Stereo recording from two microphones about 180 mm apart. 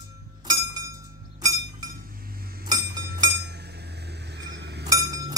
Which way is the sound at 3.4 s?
65° right (ahead or behind).